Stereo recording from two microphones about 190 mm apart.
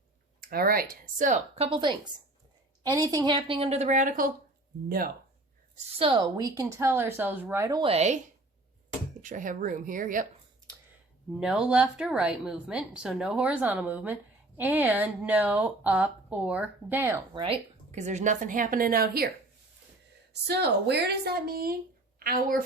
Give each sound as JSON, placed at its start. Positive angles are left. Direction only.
{"t": 0.4, "sound": "a woman's voice", "side_deg": -50}
{"t": 1.7, "sound": "a woman's voice", "side_deg": -25}
{"t": 5.9, "sound": "a woman's voice", "side_deg": -25}
{"t": 7.8, "sound": "speech", "side_deg": -30}
{"t": 9.2, "sound": "a woman's voice", "side_deg": -45}
{"t": 11.3, "sound": "a woman's voice", "side_deg": -5}
{"t": 17.3, "sound": "a woman's voice", "side_deg": -30}
{"t": 20.3, "sound": "a woman's voice", "side_deg": -60}